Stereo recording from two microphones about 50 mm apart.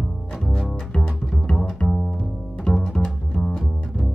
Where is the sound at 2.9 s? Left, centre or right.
Centre.